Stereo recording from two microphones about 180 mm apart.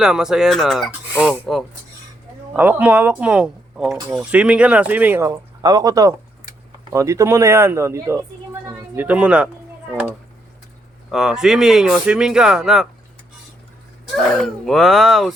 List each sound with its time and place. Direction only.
0.0 s speech: 5° right (ahead or behind)
14.2 s speech: centre (ahead or behind)